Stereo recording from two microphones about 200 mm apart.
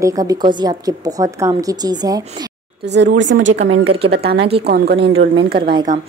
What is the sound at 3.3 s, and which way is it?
Speech, 55° right (ahead or behind).